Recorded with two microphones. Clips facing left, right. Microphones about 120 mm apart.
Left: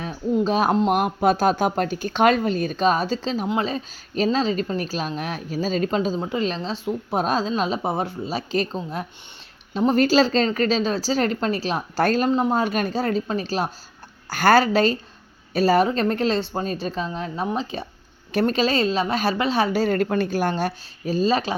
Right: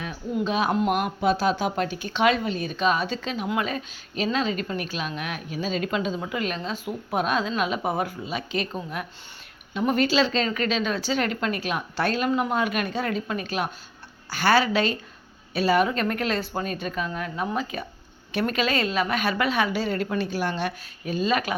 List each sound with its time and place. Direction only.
0.0 s a man's voice: 30° left (ahead or behind)
0.9 s speech: 50° left (ahead or behind)
12.3 s speech: 30° left (ahead or behind)
14.3 s a woman's voice: 45° left (ahead or behind); by 21.5 s 30° left (ahead or behind)